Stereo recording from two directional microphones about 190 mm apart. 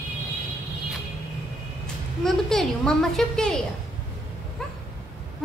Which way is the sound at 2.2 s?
Centre (ahead or behind).